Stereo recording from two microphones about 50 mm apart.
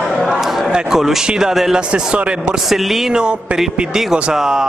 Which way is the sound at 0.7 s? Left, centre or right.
Centre.